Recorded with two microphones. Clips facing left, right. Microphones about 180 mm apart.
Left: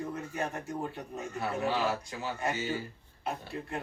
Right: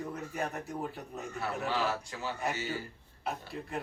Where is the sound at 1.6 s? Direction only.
15° left (ahead or behind).